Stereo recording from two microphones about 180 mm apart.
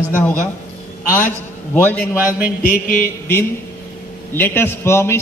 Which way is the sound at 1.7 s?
10° left (ahead or behind).